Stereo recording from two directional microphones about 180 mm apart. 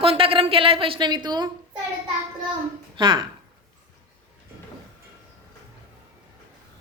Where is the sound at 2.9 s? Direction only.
25° right (ahead or behind).